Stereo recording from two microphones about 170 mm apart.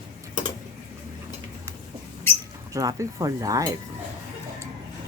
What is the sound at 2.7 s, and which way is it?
Speech, 20° right (ahead or behind).